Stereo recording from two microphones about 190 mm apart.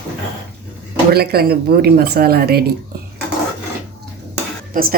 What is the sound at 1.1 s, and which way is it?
A woman's voice, 55° right (ahead or behind).